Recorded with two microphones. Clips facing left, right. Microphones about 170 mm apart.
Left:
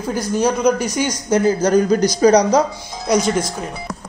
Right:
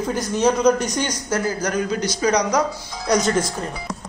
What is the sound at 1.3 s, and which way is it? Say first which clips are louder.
A man's voice: left 10 dB; 25° left (ahead or behind).